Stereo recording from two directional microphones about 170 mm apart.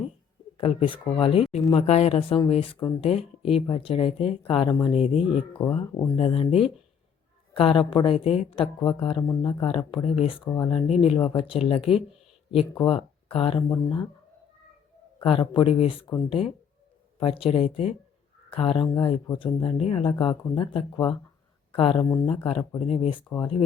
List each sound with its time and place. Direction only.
0.5 s speech: 35° left (ahead or behind)
5.7 s speech: 20° left (ahead or behind)
6.1 s speech: 35° left (ahead or behind)
9.2 s speech: 20° left (ahead or behind)
9.6 s speech: 30° left (ahead or behind)
10.8 s speech: 40° left (ahead or behind)
15.2 s speech: 30° left (ahead or behind)
22.0 s speech: 20° left (ahead or behind)
22.9 s speech: 35° left (ahead or behind)